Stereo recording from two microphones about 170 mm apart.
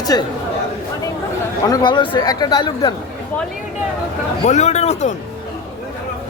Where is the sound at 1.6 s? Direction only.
25° left (ahead or behind).